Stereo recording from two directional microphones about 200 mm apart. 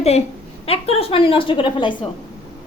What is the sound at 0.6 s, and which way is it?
A woman's voice, 30° left (ahead or behind).